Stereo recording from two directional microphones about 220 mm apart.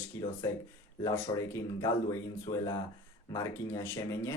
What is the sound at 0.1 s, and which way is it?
Speech, 15° left (ahead or behind).